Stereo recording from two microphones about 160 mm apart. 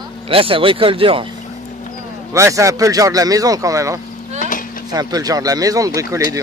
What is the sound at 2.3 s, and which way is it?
Speech, 20° right (ahead or behind).